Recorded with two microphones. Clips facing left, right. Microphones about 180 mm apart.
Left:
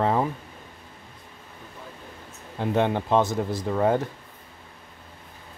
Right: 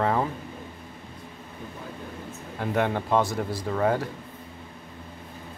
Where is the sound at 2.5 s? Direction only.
20° left (ahead or behind).